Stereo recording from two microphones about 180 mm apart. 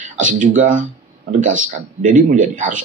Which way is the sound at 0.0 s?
45° right (ahead or behind).